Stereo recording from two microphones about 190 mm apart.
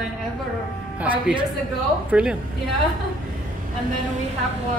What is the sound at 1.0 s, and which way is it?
A woman's voice, 5° right (ahead or behind).